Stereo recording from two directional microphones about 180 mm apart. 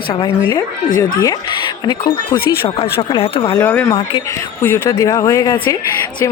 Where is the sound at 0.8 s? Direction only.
45° left (ahead or behind).